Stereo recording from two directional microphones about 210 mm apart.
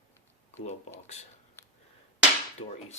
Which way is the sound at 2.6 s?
25° left (ahead or behind).